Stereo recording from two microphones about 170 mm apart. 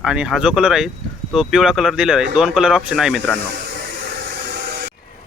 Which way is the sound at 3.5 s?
65° right (ahead or behind).